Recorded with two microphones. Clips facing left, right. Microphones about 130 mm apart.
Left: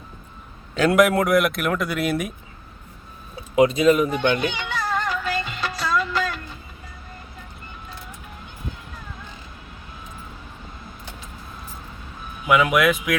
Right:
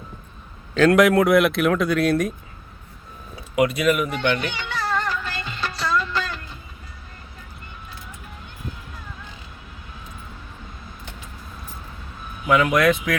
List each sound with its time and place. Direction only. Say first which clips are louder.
0.7 s a man's voice: right 2 dB; 5° left (ahead or behind)
3.5 s music: left 3 dB; 25° left (ahead or behind); by 6.4 s 5° left (ahead or behind)
12.5 s a man's voice: even; 5° left (ahead or behind)